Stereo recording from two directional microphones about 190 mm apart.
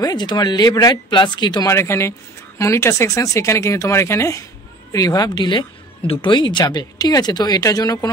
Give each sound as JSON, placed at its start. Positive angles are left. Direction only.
{"t": 0.0, "sound": "speech", "side_deg": 20}